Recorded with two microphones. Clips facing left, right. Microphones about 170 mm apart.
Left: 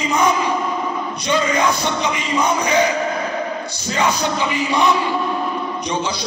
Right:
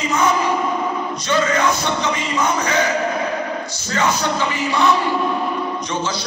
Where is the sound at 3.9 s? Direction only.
15° left (ahead or behind).